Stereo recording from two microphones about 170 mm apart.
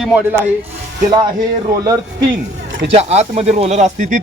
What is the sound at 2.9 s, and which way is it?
Speech, 40° right (ahead or behind).